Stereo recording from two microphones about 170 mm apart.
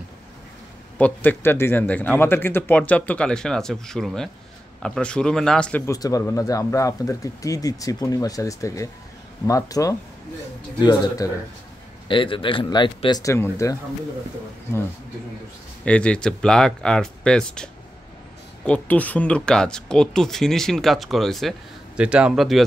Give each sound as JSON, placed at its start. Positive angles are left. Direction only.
{"t": 0.9, "sound": "speech", "side_deg": 10}
{"t": 5.9, "sound": "speech", "side_deg": 20}
{"t": 15.8, "sound": "speech", "side_deg": 5}
{"t": 18.7, "sound": "speech", "side_deg": 10}